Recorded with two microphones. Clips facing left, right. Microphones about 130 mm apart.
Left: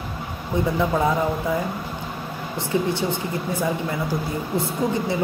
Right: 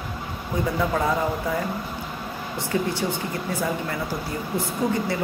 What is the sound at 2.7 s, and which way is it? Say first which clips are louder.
Speech: left 2 dB; 20° left (ahead or behind).